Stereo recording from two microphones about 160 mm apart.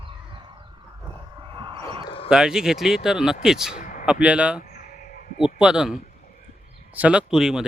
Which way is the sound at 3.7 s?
55° left (ahead or behind).